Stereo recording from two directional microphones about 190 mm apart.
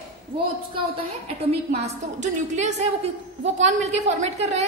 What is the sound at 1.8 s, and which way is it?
A woman's voice, 40° right (ahead or behind).